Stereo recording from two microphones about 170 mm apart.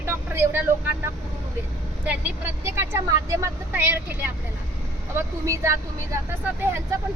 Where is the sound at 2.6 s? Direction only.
15° right (ahead or behind).